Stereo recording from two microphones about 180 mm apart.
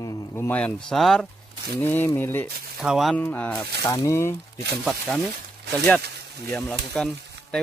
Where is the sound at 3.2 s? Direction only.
10° left (ahead or behind).